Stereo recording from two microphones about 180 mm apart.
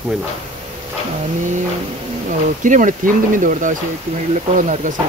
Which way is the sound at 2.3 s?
45° right (ahead or behind).